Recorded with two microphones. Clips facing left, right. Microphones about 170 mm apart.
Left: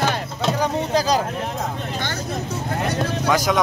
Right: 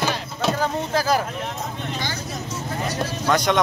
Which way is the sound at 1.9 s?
55° left (ahead or behind).